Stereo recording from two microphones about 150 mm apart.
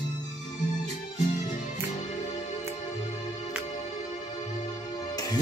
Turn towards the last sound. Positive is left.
turn(degrees=25)  # may be behind; listen again after turning